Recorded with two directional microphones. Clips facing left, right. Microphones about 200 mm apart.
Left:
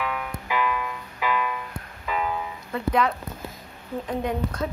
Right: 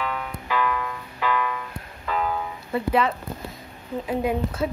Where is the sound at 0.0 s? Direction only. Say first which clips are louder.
Even; 10° left (ahead or behind).